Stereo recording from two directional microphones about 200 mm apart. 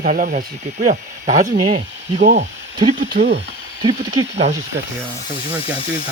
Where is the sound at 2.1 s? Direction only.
35° right (ahead or behind).